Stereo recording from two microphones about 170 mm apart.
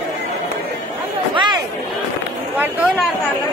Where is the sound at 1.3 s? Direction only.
25° right (ahead or behind).